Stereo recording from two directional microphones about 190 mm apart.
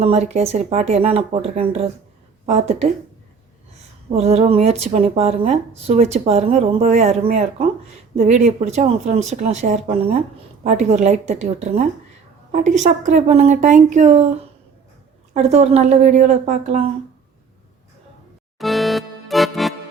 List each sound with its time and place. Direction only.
0.0 s a woman's voice: 35° right (ahead or behind)
4.1 s a woman's voice: 35° right (ahead or behind)
15.3 s a woman's voice: 35° right (ahead or behind)
18.6 s music: centre (ahead or behind)